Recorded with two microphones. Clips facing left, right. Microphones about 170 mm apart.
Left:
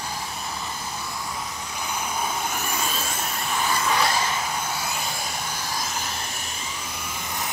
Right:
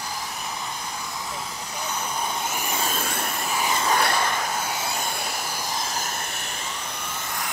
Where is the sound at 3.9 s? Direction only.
55° right (ahead or behind).